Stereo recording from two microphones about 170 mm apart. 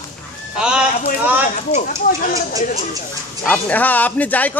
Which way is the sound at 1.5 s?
50° left (ahead or behind).